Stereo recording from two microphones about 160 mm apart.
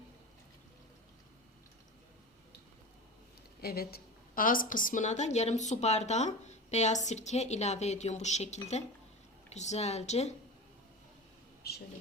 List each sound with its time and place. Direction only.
3.6 s a woman's voice: 75° left (ahead or behind); by 10.3 s 45° left (ahead or behind)